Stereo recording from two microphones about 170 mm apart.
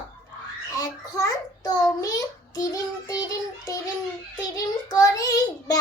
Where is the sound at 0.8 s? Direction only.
20° left (ahead or behind).